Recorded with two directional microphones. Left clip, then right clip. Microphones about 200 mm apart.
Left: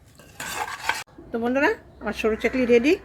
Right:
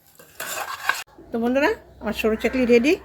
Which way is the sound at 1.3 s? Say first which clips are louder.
Right 1 dB; centre (ahead or behind).